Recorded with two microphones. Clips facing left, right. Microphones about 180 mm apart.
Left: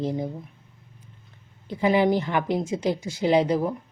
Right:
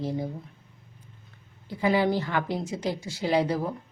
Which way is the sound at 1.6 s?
20° left (ahead or behind).